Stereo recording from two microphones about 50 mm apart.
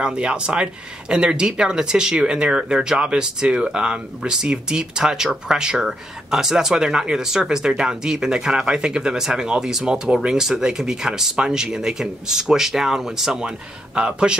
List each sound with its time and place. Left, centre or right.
0.0 s a man's voice: centre